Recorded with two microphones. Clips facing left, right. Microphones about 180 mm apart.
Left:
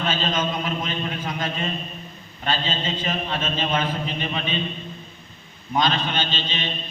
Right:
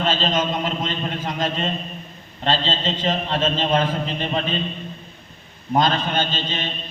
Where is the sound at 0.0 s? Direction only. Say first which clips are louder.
Right 3 dB; 35° right (ahead or behind).